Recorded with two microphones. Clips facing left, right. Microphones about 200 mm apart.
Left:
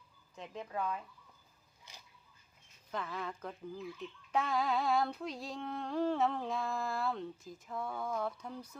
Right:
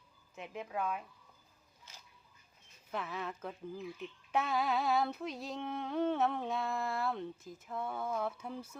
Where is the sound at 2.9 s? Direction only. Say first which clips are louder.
Even; 5° right (ahead or behind).